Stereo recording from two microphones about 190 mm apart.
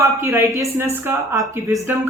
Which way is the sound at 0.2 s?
15° right (ahead or behind).